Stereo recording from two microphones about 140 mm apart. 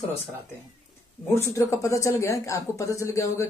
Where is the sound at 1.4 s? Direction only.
20° left (ahead or behind).